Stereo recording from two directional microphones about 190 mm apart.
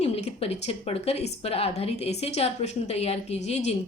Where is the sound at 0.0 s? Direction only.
35° left (ahead or behind).